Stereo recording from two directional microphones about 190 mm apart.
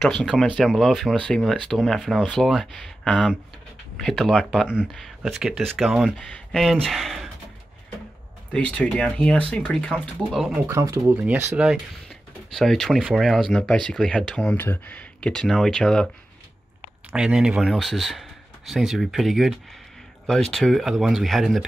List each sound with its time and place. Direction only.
0.0 s speech: centre (ahead or behind)
8.5 s speech: 5° left (ahead or behind)
10.7 s speech: 15° right (ahead or behind); by 16.1 s 5° left (ahead or behind)
17.1 s speech: 5° right (ahead or behind)